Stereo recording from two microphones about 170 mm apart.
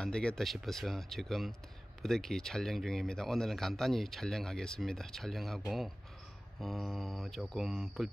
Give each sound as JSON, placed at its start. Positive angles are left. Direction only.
{"t": 0.0, "sound": "speech", "side_deg": 5}
{"t": 6.6, "sound": "speech", "side_deg": 0}